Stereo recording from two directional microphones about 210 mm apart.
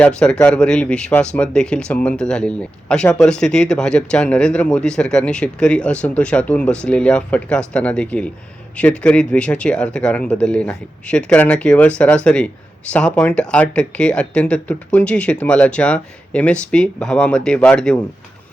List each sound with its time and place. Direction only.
0.0 s speech: 5° left (ahead or behind)